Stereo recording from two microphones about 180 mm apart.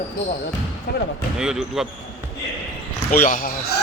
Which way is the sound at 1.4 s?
5° right (ahead or behind).